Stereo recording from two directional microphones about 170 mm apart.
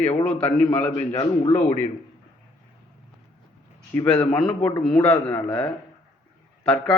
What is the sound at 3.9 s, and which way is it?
Speech, 5° left (ahead or behind).